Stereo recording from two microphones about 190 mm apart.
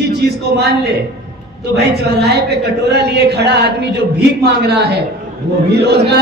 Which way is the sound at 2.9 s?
60° right (ahead or behind).